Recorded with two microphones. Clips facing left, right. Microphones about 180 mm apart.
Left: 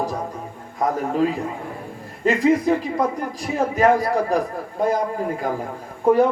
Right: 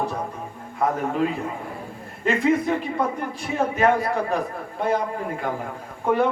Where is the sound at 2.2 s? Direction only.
35° left (ahead or behind).